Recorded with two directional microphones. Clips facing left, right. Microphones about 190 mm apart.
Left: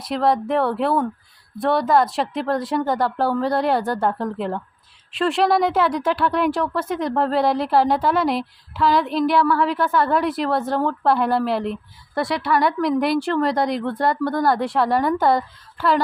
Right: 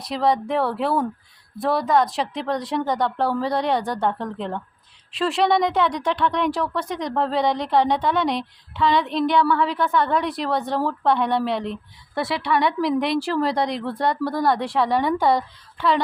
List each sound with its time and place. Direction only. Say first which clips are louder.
0.0 s speech: left 1 dB; centre (ahead or behind)